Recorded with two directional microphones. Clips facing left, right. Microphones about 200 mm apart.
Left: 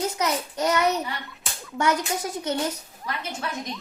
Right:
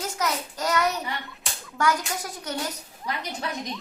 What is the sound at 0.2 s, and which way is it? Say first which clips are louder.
A child's voice: left 3 dB; 20° left (ahead or behind).